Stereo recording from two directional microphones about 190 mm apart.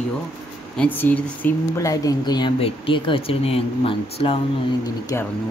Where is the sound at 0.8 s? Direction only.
10° left (ahead or behind); by 4.4 s 30° left (ahead or behind).